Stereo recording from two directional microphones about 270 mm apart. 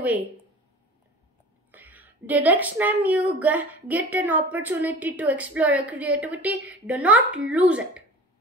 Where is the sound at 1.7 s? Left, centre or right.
Centre.